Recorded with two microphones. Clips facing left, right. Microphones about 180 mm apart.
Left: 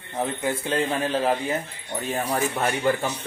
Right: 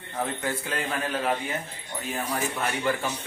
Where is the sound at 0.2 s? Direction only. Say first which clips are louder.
Left 4 dB; 20° left (ahead or behind).